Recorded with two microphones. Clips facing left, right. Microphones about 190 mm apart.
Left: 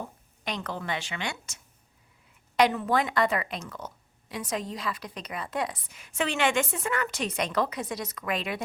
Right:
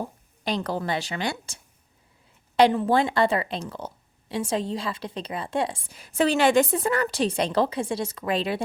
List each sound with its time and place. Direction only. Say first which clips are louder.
0.0 s a woman's voice: right 5 dB; 35° right (ahead or behind)